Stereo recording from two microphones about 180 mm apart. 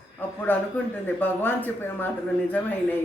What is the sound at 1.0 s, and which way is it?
A woman's voice, 10° left (ahead or behind).